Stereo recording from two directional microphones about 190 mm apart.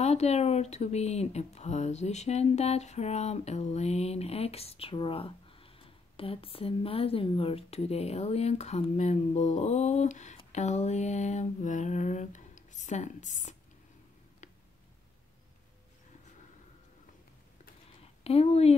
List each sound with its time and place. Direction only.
0.0 s speech: 35° left (ahead or behind)
18.2 s speech: 30° left (ahead or behind)